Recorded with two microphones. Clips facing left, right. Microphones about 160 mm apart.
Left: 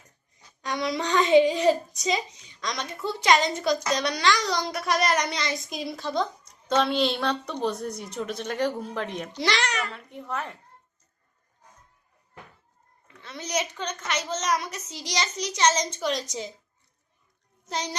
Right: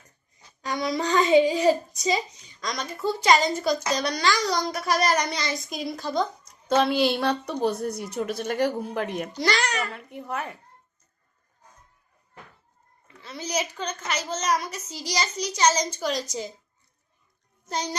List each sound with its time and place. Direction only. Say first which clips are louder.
0.6 s a child's voice: right 1 dB; centre (ahead or behind)
13.5 s a child's voice: even; centre (ahead or behind)
17.7 s a child's voice: right 2 dB; centre (ahead or behind)